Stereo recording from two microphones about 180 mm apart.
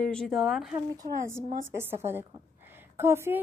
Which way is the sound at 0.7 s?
20° right (ahead or behind).